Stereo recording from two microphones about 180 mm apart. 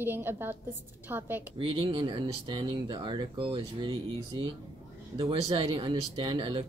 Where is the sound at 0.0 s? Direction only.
10° right (ahead or behind).